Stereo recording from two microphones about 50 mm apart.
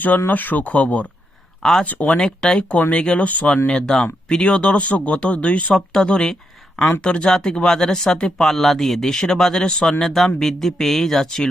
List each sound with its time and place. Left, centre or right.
0.3 s speech: left
2.1 s speech: centre
3.7 s speech: centre
5.7 s speech: centre